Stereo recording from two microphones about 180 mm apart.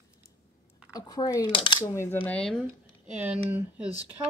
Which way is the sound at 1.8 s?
15° left (ahead or behind).